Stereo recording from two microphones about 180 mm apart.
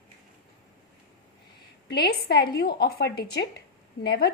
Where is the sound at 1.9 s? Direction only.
60° left (ahead or behind).